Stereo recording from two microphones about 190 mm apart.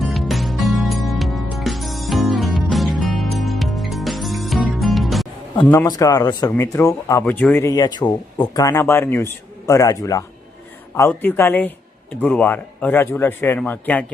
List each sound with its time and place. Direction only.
0.0 s music: centre (ahead or behind)
5.6 s a man's voice: 10° left (ahead or behind)